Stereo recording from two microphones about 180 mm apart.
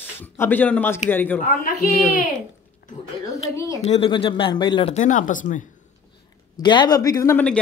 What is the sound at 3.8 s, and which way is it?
Speech, 35° left (ahead or behind).